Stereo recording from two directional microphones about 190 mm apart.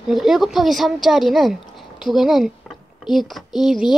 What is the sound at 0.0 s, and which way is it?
Speech, centre (ahead or behind).